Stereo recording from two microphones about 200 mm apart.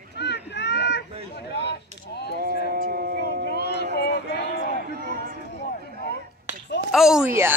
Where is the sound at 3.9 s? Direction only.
55° left (ahead or behind).